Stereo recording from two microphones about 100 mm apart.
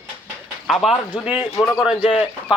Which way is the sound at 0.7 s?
Centre (ahead or behind).